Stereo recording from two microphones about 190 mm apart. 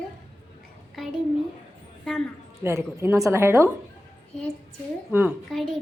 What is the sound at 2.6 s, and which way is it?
A woman's voice, 15° right (ahead or behind).